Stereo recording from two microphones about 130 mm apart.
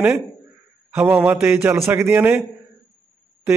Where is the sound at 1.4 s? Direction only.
20° right (ahead or behind).